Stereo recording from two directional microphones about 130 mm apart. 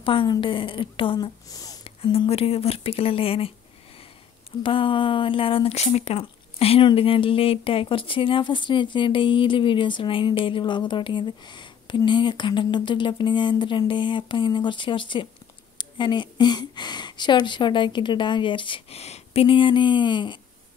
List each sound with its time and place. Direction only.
0.0 s speech: 40° left (ahead or behind)
2.1 s speech: 50° left (ahead or behind)